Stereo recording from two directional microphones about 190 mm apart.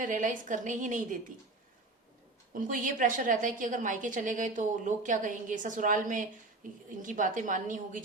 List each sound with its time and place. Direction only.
0.0 s a woman's voice: 45° right (ahead or behind)
2.5 s a woman's voice: 45° right (ahead or behind)